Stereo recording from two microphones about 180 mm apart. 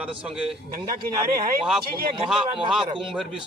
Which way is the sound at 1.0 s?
50° right (ahead or behind).